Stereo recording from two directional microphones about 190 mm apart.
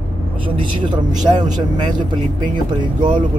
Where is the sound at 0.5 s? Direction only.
25° right (ahead or behind).